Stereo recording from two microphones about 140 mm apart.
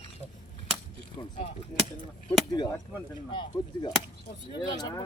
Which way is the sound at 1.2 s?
25° left (ahead or behind).